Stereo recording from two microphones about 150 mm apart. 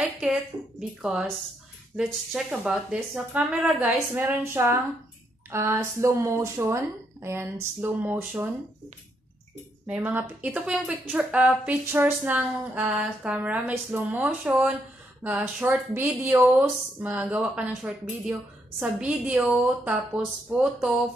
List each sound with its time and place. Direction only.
0.2 s a woman's voice: 5° right (ahead or behind)
2.3 s speech: 5° right (ahead or behind)
9.8 s a woman's voice: 10° right (ahead or behind)